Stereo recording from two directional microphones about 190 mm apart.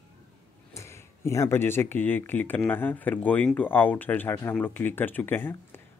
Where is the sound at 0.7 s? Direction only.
15° left (ahead or behind).